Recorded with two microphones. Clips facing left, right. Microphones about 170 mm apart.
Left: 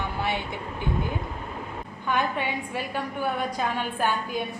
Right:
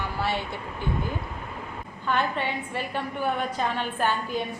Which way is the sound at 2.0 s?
10° left (ahead or behind).